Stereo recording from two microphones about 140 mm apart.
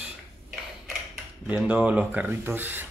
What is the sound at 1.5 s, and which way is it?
Speech, 10° right (ahead or behind).